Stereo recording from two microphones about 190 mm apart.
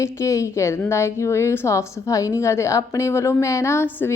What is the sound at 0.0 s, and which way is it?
A woman's voice, 15° left (ahead or behind).